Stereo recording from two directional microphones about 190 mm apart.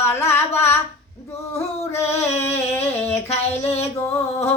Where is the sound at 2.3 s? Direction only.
10° left (ahead or behind).